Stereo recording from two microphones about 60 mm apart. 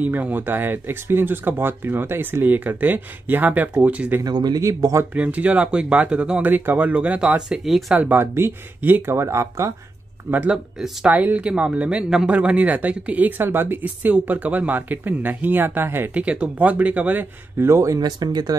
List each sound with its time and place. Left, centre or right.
0.0 s speech: right
4.2 s speech: right
5.1 s speech: right
6.4 s speech: right
6.9 s speech: right
8.1 s speech: right
10.5 s speech: centre
11.1 s speech: right
13.4 s speech: right
16.1 s speech: right
17.6 s speech: right
18.5 s speech: right